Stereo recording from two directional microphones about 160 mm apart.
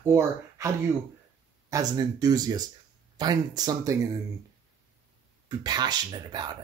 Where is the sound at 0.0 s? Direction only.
15° right (ahead or behind).